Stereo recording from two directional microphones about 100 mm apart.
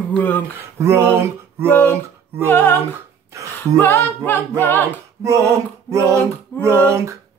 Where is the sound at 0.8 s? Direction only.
25° right (ahead or behind).